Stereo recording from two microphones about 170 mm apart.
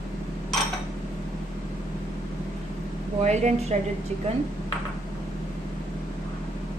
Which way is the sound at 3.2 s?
40° right (ahead or behind).